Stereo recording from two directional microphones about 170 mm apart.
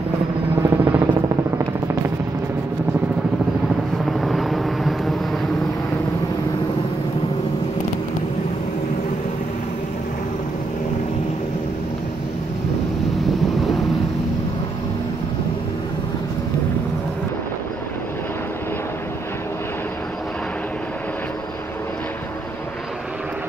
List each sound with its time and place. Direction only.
0.6 s vehicle: 15° right (ahead or behind)
4.0 s vehicle: centre (ahead or behind)